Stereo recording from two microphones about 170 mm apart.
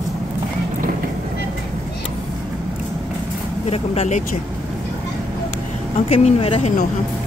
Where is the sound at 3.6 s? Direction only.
35° left (ahead or behind).